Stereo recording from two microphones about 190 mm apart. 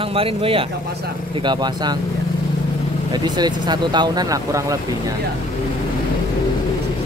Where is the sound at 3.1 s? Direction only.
20° right (ahead or behind).